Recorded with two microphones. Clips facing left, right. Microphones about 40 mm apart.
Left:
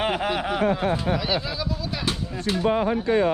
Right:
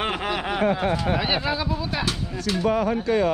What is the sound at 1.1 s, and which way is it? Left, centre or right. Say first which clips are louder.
Speech: right 2 dB; right.